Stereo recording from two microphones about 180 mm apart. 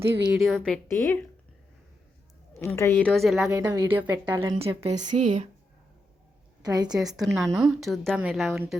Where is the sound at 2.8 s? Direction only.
10° left (ahead or behind).